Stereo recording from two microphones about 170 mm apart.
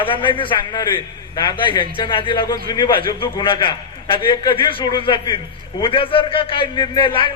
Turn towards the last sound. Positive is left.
turn(degrees=30)  # may be behind; listen again after turning